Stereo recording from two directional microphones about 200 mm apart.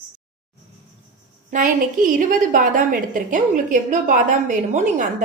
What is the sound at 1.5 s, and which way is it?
A woman's voice, 40° right (ahead or behind).